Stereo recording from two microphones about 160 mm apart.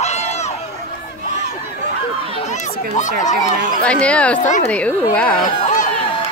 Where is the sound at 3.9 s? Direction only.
5° left (ahead or behind).